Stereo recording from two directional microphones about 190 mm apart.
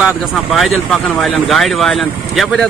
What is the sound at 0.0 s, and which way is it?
Speech, centre (ahead or behind).